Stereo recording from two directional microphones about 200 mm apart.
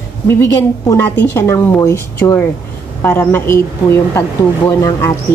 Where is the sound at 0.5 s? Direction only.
20° left (ahead or behind).